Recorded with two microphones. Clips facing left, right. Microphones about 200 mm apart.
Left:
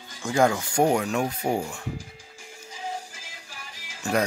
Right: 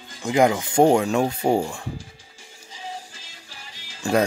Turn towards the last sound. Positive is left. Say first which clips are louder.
# right 4 dB
turn(degrees=-25)  # may be behind; listen again after turning